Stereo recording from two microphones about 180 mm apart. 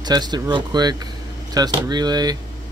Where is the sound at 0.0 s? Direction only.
25° right (ahead or behind).